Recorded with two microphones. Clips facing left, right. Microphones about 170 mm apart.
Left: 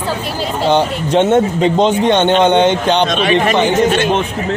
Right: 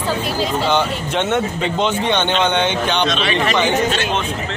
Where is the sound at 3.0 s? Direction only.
50° left (ahead or behind).